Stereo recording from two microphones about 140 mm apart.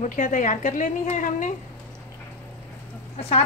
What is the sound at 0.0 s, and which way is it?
A woman's voice, 65° left (ahead or behind).